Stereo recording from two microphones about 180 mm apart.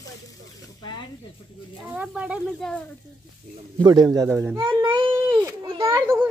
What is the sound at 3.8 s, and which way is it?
A child's voice, 20° right (ahead or behind).